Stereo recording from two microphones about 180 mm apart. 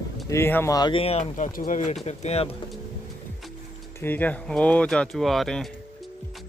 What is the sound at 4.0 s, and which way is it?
Speech, 10° left (ahead or behind).